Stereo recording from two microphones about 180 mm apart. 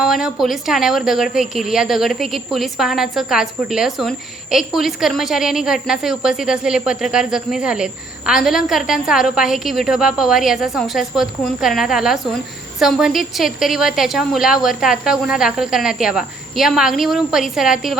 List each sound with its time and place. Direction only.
0.0 s a woman's voice: 5° right (ahead or behind)